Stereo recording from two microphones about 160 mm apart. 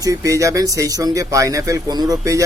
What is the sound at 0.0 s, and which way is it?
A man's voice, 20° right (ahead or behind).